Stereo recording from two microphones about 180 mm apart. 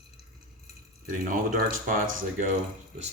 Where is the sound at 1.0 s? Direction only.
50° right (ahead or behind).